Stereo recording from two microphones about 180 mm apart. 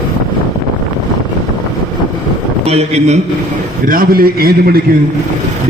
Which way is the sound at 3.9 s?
55° right (ahead or behind).